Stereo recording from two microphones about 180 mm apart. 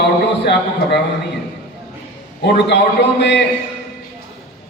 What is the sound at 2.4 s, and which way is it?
A man's voice, 75° left (ahead or behind).